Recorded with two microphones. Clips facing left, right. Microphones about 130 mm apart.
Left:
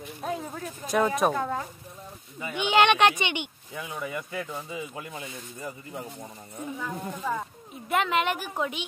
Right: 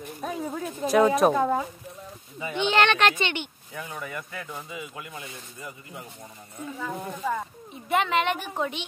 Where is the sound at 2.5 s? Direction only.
15° left (ahead or behind); by 6.3 s 30° left (ahead or behind).